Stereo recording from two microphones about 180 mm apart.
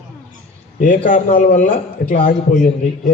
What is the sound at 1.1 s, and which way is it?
A man's voice, 45° left (ahead or behind).